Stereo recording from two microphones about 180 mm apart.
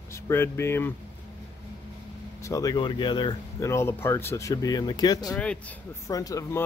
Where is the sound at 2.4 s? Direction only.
20° left (ahead or behind).